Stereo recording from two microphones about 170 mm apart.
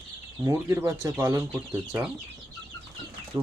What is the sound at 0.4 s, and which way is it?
Speech, 15° right (ahead or behind).